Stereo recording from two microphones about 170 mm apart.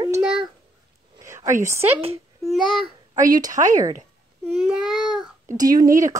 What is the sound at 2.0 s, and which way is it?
Babbling, 35° right (ahead or behind).